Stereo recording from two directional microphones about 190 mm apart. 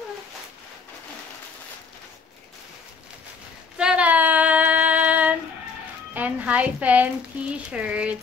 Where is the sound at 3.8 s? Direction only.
5° right (ahead or behind).